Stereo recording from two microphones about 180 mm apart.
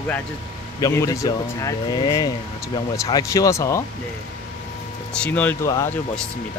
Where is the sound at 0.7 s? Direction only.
15° left (ahead or behind).